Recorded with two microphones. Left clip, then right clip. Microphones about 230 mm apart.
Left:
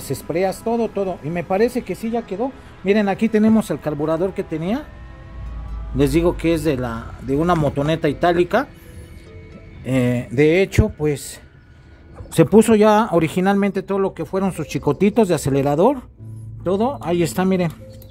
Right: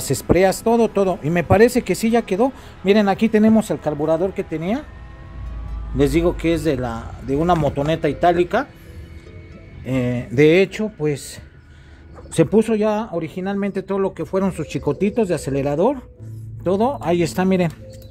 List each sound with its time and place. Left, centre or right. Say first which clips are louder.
0.0 s speech: right 5 dB; centre
2.8 s speech: right 2 dB; centre
5.9 s speech: even; centre
9.8 s speech: left 3 dB; centre
10.3 s speech: right 2 dB; centre
10.7 s speech: left 2 dB; centre
12.4 s speech: left 4 dB; centre
16.6 s speech: right 1 dB; centre